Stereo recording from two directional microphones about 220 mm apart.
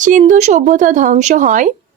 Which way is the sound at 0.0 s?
35° right (ahead or behind).